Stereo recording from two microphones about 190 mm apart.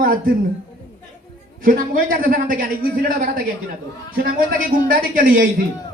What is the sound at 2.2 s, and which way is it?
Speech, 50° right (ahead or behind).